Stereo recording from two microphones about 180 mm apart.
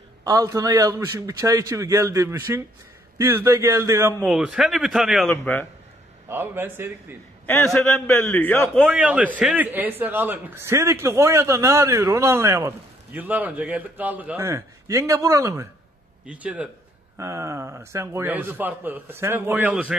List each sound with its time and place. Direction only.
0.2 s a man's voice: 20° right (ahead or behind)
4.3 s a man's voice: 5° right (ahead or behind)
5.3 s a man's voice: 10° left (ahead or behind)
6.2 s a man's voice: 10° right (ahead or behind)
7.8 s a man's voice: 10° left (ahead or behind)
8.8 s a man's voice: 5° right (ahead or behind)